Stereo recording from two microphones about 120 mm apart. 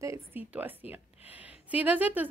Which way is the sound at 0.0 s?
25° right (ahead or behind).